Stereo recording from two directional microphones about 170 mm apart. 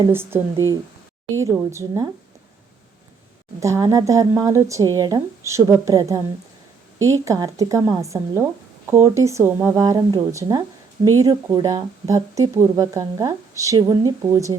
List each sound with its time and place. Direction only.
0.1 s speech: 15° right (ahead or behind)
1.7 s speech: 20° right (ahead or behind)
3.6 s speech: 20° right (ahead or behind)